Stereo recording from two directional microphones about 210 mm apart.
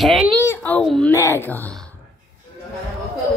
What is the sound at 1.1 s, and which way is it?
Speech, 10° left (ahead or behind).